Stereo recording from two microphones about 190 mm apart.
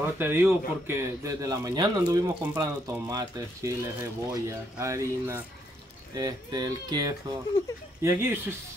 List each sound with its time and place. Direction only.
0.0 s a man's voice: 10° right (ahead or behind)